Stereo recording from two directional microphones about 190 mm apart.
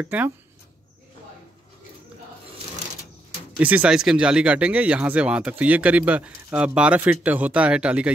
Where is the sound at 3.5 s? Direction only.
5° right (ahead or behind).